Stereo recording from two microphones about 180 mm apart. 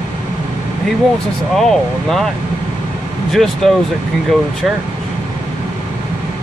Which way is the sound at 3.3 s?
Centre (ahead or behind).